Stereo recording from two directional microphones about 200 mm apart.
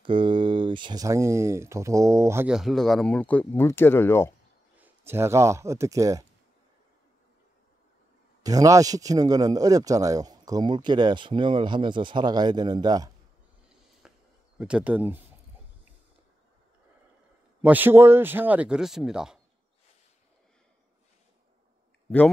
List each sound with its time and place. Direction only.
0.0 s speech: 25° right (ahead or behind); by 4.3 s 10° left (ahead or behind)
4.7 s speech: 10° right (ahead or behind)
8.4 s speech: 20° right (ahead or behind)
14.0 s a sound: 5° right (ahead or behind)
14.6 s speech: 5° right (ahead or behind)
17.6 s speech: 10° right (ahead or behind)